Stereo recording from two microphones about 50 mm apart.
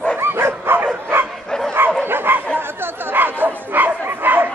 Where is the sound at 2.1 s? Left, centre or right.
Right.